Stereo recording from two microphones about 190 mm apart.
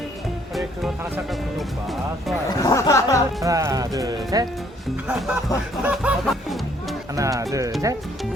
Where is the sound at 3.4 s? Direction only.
15° right (ahead or behind).